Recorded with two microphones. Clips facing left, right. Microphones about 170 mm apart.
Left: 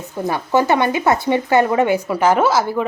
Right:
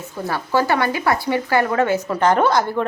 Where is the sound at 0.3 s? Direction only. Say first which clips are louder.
Left 3 dB; 20° left (ahead or behind).